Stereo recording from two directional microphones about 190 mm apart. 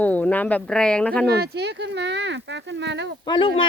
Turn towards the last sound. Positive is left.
turn(degrees=25)  # may be behind; listen again after turning